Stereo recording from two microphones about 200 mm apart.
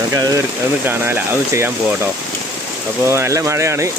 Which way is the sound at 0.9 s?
10° right (ahead or behind).